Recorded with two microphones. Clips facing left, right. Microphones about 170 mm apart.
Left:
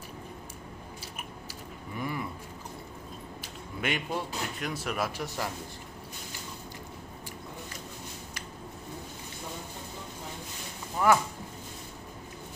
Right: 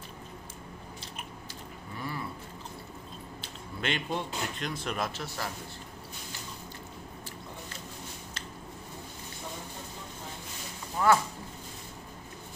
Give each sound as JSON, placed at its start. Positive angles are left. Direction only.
{"t": 2.0, "sound": "a sound", "side_deg": 15}
{"t": 3.3, "sound": "speech", "side_deg": 10}
{"t": 11.0, "sound": "speech", "side_deg": 15}